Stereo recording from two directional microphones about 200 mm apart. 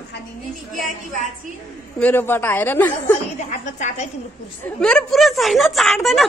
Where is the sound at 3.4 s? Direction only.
40° left (ahead or behind).